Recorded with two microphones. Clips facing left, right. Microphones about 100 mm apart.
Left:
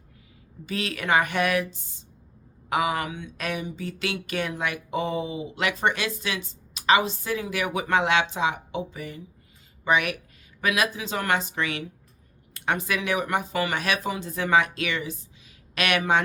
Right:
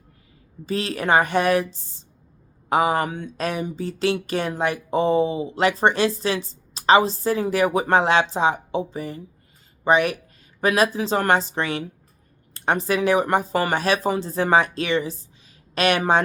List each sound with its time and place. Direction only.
0.6 s speech: 35° right (ahead or behind)